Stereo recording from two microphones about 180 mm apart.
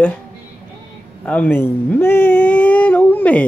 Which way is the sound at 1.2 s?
10° left (ahead or behind).